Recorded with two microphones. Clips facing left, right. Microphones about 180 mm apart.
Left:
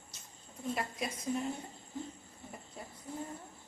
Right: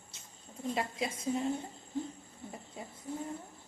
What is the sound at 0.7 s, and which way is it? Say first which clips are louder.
Speech: right 2 dB; 25° right (ahead or behind).